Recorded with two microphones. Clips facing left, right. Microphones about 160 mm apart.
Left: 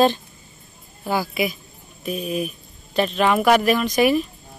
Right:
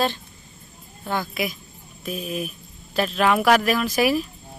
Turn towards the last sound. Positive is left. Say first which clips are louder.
# left 3 dB
turn(degrees=-5)  # may be behind; listen again after turning